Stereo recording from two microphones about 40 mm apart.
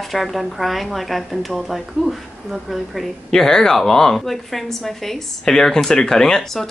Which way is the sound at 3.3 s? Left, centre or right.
Centre.